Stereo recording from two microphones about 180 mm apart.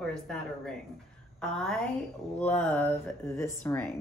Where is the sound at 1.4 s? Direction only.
5° left (ahead or behind).